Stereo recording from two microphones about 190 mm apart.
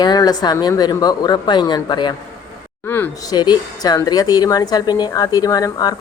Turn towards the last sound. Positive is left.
turn(degrees=20)  # may be behind; listen again after turning